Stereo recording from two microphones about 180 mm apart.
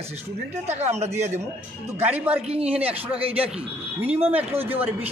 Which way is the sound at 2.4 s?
35° right (ahead or behind).